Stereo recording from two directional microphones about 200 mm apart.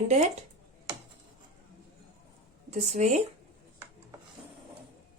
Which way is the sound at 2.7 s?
35° right (ahead or behind).